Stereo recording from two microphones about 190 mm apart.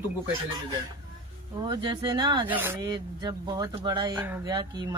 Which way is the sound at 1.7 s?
25° right (ahead or behind).